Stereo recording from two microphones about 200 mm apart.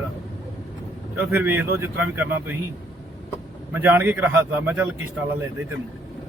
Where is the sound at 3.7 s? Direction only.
10° right (ahead or behind).